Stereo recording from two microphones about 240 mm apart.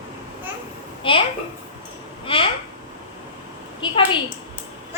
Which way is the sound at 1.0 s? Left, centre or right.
Left.